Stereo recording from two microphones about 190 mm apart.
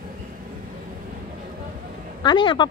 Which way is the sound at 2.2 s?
25° left (ahead or behind).